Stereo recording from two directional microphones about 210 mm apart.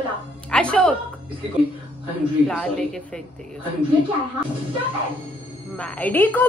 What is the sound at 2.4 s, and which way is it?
Speech, centre (ahead or behind).